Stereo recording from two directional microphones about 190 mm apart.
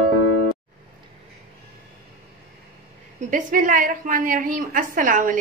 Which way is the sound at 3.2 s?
45° right (ahead or behind).